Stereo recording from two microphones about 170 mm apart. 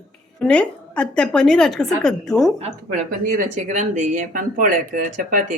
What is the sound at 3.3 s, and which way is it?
Speech, 50° right (ahead or behind).